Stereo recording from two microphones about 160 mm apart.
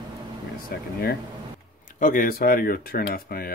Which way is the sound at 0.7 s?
65° left (ahead or behind).